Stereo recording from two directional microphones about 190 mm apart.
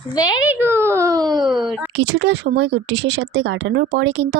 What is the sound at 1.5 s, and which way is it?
Speech, centre (ahead or behind).